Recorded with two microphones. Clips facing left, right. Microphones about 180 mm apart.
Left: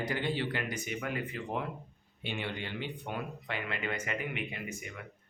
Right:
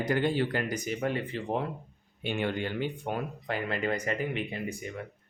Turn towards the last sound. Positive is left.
turn(degrees=-35)  # may be behind; listen again after turning